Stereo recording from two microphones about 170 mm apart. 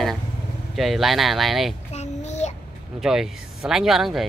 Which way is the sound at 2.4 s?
40° left (ahead or behind).